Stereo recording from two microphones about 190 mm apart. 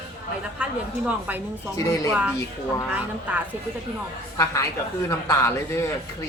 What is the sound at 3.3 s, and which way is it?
Speech, 10° right (ahead or behind).